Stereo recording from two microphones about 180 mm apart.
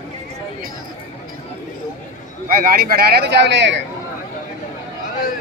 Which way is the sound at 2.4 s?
55° right (ahead or behind).